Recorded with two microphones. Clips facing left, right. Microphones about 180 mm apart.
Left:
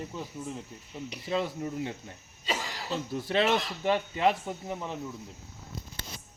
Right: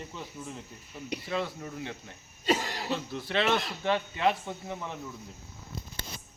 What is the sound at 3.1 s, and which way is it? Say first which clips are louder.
Speech: left 4 dB; 40° left (ahead or behind).